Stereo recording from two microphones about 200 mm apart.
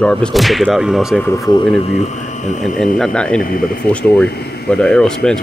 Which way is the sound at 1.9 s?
35° left (ahead or behind).